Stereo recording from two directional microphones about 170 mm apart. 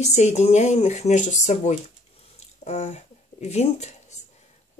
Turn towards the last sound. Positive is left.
turn(degrees=40)  # may be behind; listen again after turning